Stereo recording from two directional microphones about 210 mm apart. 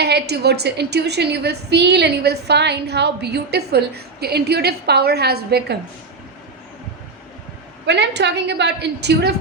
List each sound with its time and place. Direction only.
0.0 s a woman's voice: 50° right (ahead or behind)
7.9 s a woman's voice: 55° right (ahead or behind)